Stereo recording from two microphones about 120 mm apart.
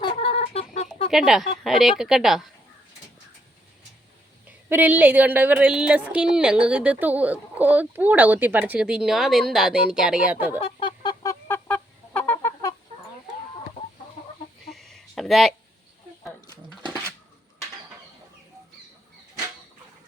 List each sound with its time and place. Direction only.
0.0 s chicken: 50° left (ahead or behind); by 0.9 s 65° left (ahead or behind)
1.1 s a woman's voice: 5° right (ahead or behind)
4.7 s a woman's voice: 15° right (ahead or behind)
10.6 s fowl: 45° left (ahead or behind)
11.4 s fowl: 15° left (ahead or behind)
14.7 s a sound: centre (ahead or behind)
16.5 s a sound: 35° left (ahead or behind)